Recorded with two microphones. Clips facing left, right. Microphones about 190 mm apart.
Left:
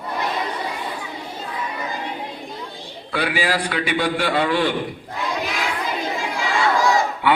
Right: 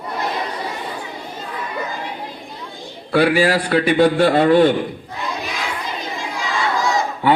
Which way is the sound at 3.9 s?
25° right (ahead or behind).